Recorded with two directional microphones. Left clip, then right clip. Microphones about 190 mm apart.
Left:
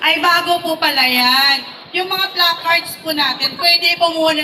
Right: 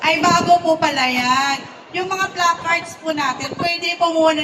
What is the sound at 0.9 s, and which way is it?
Speech, centre (ahead or behind).